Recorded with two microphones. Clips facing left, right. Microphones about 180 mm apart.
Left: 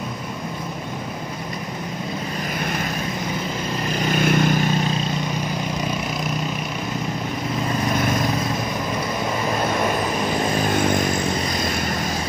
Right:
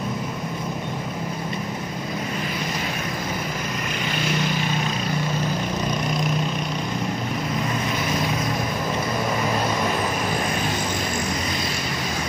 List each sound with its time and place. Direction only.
4.1 s vehicle: 50° left (ahead or behind)